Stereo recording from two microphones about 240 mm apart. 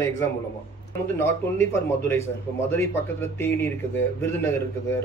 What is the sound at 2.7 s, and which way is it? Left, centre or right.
A man's voice, centre.